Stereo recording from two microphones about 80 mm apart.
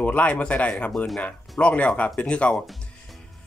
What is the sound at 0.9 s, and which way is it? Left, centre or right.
Speech, centre.